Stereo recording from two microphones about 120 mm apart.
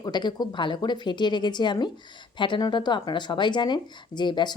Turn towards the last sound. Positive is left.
turn(degrees=40)  # may be behind; listen again after turning